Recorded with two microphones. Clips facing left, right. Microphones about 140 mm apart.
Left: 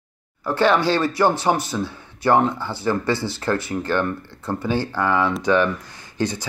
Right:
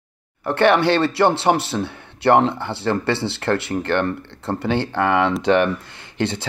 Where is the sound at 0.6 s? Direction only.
60° right (ahead or behind).